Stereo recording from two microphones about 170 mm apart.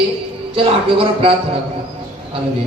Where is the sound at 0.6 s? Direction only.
35° right (ahead or behind).